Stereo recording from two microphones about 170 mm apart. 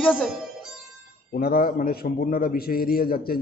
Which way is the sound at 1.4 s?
60° left (ahead or behind).